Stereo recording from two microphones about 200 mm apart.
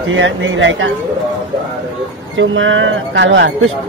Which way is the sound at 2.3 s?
70° right (ahead or behind).